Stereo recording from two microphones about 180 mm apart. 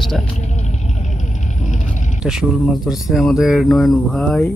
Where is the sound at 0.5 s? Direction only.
40° left (ahead or behind).